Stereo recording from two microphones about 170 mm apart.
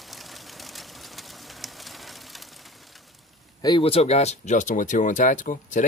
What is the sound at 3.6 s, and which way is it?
Speech, 30° left (ahead or behind).